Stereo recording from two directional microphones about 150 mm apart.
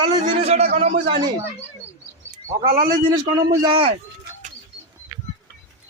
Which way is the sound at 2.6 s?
90° right.